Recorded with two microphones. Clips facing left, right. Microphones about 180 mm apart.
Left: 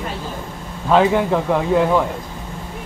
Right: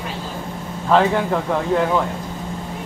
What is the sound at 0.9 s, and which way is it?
Speech, 5° left (ahead or behind).